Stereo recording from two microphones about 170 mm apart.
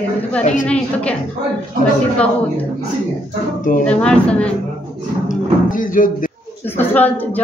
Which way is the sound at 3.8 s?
5° left (ahead or behind).